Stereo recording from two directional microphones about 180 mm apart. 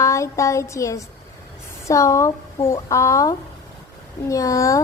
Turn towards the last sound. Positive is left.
turn(degrees=15)  # may be behind; listen again after turning